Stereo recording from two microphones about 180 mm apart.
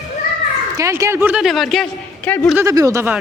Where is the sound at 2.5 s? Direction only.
20° right (ahead or behind).